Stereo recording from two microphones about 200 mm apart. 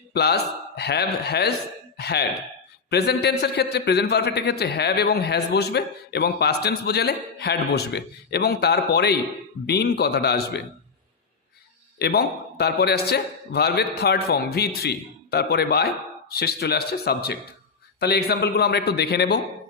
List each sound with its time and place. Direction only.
0.1 s a man's voice: 55° left (ahead or behind)
11.9 s a man's voice: 55° left (ahead or behind)